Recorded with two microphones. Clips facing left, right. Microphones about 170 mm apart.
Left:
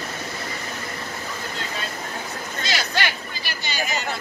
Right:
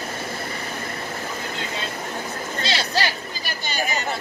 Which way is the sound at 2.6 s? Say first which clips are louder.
Right 1 dB; 30° right (ahead or behind).